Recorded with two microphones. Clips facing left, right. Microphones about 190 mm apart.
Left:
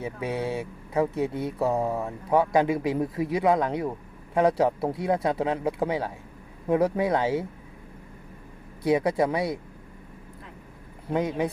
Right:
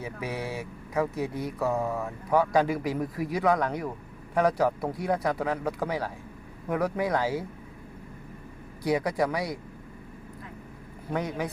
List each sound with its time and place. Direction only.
0.0 s speech: 25° left (ahead or behind)
8.8 s speech: 25° left (ahead or behind)
11.1 s speech: 20° left (ahead or behind)